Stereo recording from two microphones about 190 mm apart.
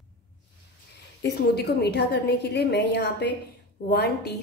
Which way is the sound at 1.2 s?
60° left (ahead or behind).